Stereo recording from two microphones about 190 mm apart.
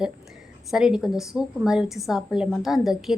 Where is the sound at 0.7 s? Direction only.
5° right (ahead or behind).